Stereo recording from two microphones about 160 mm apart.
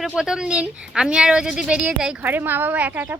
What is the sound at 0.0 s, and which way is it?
A woman's voice, 5° right (ahead or behind).